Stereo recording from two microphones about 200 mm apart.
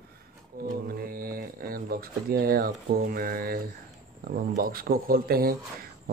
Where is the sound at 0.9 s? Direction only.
45° right (ahead or behind).